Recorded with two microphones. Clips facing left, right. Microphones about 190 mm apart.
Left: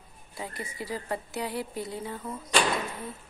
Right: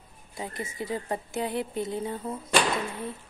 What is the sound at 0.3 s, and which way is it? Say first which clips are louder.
Speech: right 2 dB; 20° right (ahead or behind).